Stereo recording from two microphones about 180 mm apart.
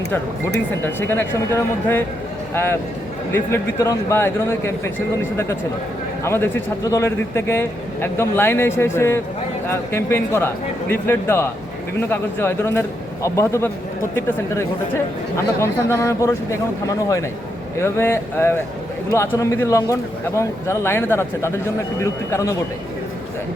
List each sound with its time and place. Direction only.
0.9 s speech: 10° left (ahead or behind)
3.3 s speech: 15° left (ahead or behind)
6.2 s speech: 15° left (ahead or behind)
15.6 s speech: 15° left (ahead or behind)